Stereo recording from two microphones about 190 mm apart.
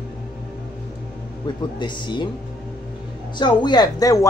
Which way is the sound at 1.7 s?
25° left (ahead or behind).